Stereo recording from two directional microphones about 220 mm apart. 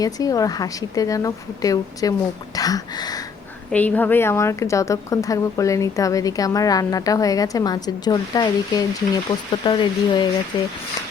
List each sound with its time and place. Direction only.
0.0 s a woman's voice: 15° left (ahead or behind)
3.7 s a woman's voice: 5° left (ahead or behind)